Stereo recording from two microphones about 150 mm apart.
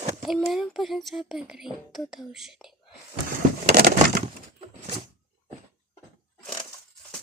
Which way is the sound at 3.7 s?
90° right.